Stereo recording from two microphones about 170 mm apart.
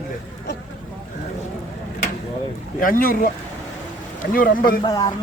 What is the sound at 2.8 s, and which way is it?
Speech, 55° left (ahead or behind).